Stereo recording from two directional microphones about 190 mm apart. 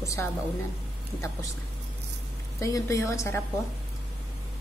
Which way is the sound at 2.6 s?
15° left (ahead or behind).